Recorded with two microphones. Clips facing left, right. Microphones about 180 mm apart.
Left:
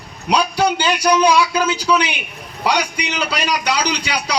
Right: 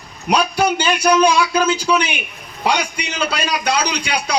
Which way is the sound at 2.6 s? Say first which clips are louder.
Even; 50° right (ahead or behind).